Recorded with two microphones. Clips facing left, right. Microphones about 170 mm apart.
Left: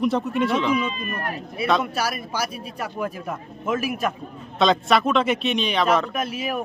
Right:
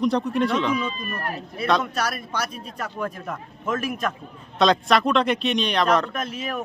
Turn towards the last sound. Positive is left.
turn(degrees=10)  # may be behind; listen again after turning